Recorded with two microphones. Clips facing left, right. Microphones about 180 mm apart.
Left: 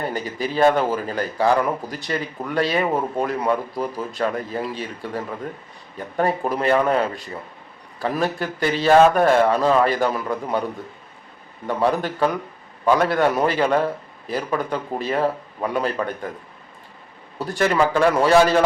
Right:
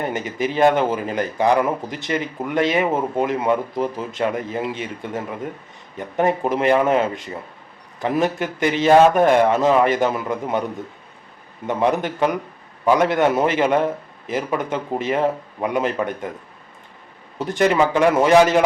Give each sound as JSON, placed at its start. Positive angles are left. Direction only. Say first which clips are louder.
{"t": 0.0, "sound": "speech", "louder": "right 2 dB", "side_deg": -20}
{"t": 11.6, "sound": "speech", "louder": "right 1 dB", "side_deg": -20}
{"t": 17.3, "sound": "speech", "louder": "right 2 dB", "side_deg": -20}